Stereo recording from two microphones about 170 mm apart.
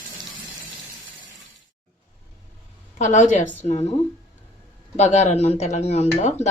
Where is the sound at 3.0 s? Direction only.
45° left (ahead or behind).